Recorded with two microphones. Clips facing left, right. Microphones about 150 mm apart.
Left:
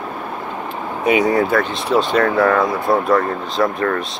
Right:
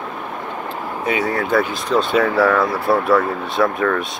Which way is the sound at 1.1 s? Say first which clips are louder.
Left 6 dB; 15° left (ahead or behind).